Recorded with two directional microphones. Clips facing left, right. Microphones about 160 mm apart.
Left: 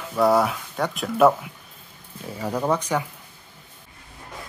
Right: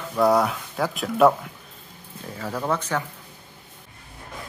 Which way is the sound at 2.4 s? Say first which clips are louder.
Left 3 dB; 15° left (ahead or behind).